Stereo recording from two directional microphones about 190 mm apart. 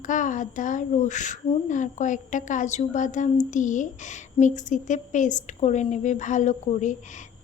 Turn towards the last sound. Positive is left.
turn(degrees=40)  # may be behind; listen again after turning